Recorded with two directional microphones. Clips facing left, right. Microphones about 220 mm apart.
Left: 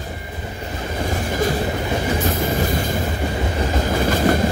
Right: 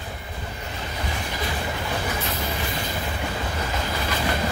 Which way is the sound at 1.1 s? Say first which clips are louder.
Left 11 dB; 45° left (ahead or behind).